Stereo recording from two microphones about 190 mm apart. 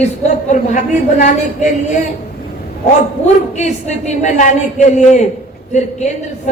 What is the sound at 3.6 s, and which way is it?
A woman's voice, 35° left (ahead or behind).